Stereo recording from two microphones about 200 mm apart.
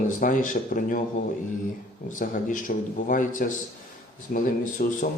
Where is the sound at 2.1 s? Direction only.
40° left (ahead or behind).